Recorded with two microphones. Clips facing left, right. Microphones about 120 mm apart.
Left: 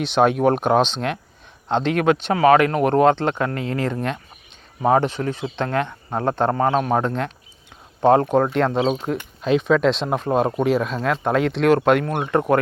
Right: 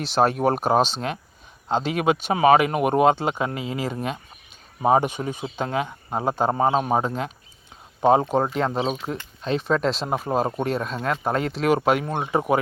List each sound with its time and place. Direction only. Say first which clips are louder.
0.0 s speech: left 3 dB; centre (ahead or behind)